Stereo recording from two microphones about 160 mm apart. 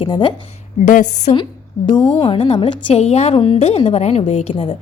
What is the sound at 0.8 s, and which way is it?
Speech, 50° left (ahead or behind).